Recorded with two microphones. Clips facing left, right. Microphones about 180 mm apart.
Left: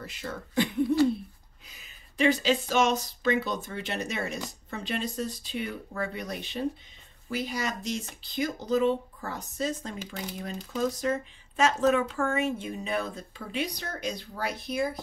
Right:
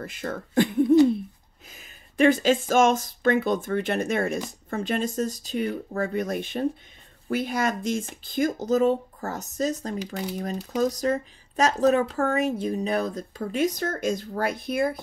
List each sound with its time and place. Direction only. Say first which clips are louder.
0.0 s speech: right 6 dB; 50° right (ahead or behind)